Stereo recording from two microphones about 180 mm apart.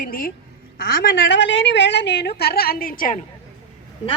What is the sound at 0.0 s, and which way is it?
Speech, 50° left (ahead or behind).